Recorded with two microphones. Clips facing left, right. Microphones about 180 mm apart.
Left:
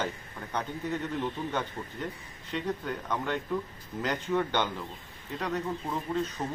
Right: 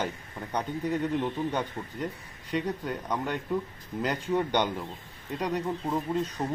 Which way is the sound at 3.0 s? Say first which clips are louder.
Even; 15° right (ahead or behind).